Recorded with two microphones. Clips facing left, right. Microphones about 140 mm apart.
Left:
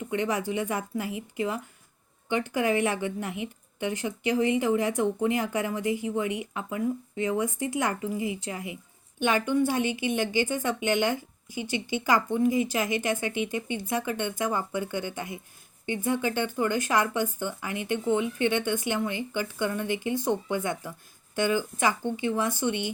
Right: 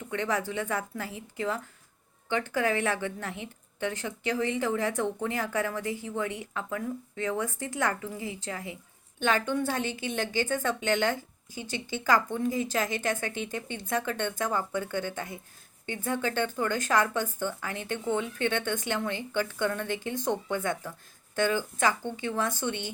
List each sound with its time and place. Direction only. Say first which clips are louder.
0.1 s a woman's voice: left 2 dB; 15° left (ahead or behind)